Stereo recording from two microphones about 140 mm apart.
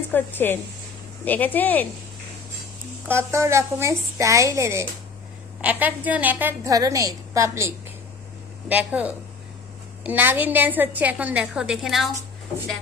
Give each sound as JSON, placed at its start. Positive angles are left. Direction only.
{"t": 0.1, "sound": "a woman's voice", "side_deg": 15}
{"t": 3.1, "sound": "a woman's voice", "side_deg": -20}
{"t": 6.7, "sound": "a woman's voice", "side_deg": -25}
{"t": 8.7, "sound": "a woman's voice", "side_deg": -10}